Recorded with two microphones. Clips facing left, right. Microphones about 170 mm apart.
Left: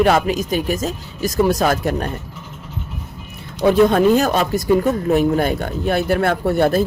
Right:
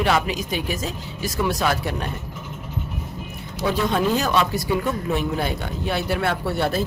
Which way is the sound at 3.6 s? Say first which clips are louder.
Left 9 dB; 50° left (ahead or behind).